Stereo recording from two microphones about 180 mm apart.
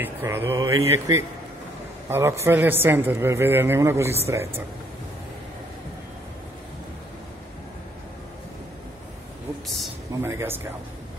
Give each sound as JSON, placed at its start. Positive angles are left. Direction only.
{"t": 0.0, "sound": "a man's voice", "side_deg": -15}
{"t": 10.2, "sound": "a man's voice", "side_deg": -15}